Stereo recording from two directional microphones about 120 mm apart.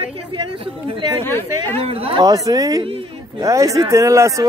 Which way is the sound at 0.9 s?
45° right (ahead or behind).